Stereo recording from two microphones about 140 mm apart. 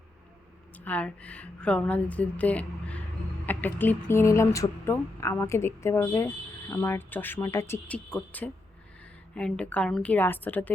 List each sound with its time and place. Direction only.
0.9 s speech: 10° left (ahead or behind)